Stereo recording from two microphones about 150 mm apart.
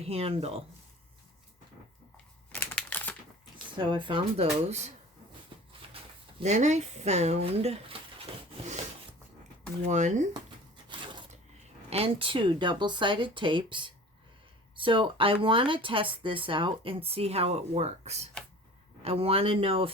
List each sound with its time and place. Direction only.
0.0 s speech: 40° right (ahead or behind)
2.5 s crumpling: 10° left (ahead or behind)
3.8 s speech: 35° right (ahead or behind)
5.8 s a sound: 40° right (ahead or behind)
6.4 s speech: 50° right (ahead or behind)
9.9 s speech: 50° right (ahead or behind)
11.9 s speech: 40° right (ahead or behind)